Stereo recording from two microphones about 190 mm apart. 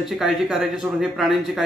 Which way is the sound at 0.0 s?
Centre (ahead or behind).